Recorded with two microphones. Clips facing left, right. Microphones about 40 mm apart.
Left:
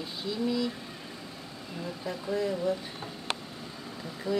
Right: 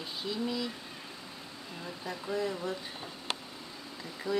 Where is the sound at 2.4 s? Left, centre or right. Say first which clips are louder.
Left 6 dB; centre.